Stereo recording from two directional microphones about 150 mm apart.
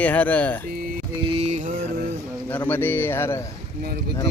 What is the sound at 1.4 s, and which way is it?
Mantra, 50° right (ahead or behind).